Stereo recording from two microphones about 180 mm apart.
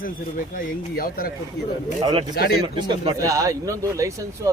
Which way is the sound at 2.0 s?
20° right (ahead or behind).